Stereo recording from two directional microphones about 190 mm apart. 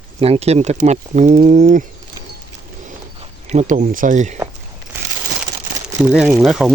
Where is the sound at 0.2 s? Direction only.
30° right (ahead or behind).